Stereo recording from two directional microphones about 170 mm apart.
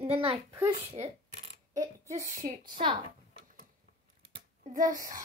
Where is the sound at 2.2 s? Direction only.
50° right (ahead or behind).